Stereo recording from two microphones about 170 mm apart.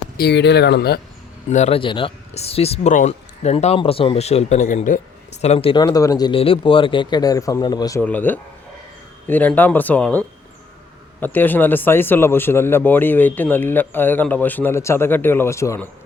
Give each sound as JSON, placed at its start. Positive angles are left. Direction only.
{"t": 0.2, "sound": "speech", "side_deg": 85}
{"t": 1.5, "sound": "speech", "side_deg": 40}
{"t": 5.4, "sound": "speech", "side_deg": 35}
{"t": 8.0, "sound": "a man's voice", "side_deg": 10}